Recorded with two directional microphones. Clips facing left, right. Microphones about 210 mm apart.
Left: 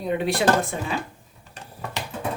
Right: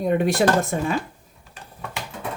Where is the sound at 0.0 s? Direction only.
45° right (ahead or behind).